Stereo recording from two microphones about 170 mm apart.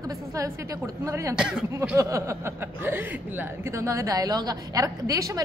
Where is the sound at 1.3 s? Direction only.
5° right (ahead or behind).